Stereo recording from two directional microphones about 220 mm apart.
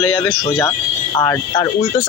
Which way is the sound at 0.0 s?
15° left (ahead or behind).